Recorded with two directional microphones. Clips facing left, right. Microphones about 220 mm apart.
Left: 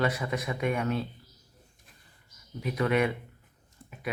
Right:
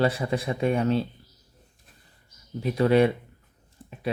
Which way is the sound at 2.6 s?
30° right (ahead or behind).